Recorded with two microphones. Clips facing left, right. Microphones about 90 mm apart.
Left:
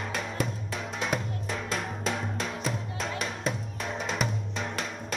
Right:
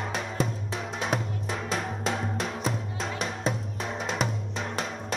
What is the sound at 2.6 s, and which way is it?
Music, 30° right (ahead or behind).